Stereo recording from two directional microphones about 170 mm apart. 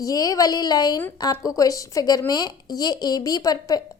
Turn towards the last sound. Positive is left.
turn(degrees=20)  # may be behind; listen again after turning